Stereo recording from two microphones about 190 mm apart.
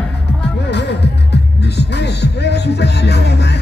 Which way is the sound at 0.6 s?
60° left (ahead or behind).